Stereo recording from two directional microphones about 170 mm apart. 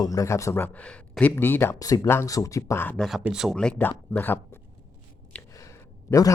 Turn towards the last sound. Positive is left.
turn(degrees=20)  # may be behind; listen again after turning